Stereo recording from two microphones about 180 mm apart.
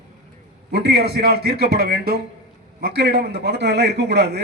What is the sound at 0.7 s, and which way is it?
A man's voice, 65° right (ahead or behind).